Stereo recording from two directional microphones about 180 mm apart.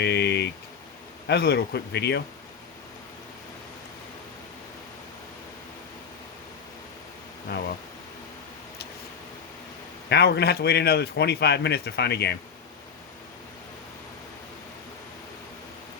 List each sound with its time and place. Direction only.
0.0 s a sound: 70° left (ahead or behind)
1.3 s a man's voice: 65° left (ahead or behind)
10.1 s a man's voice: 65° left (ahead or behind)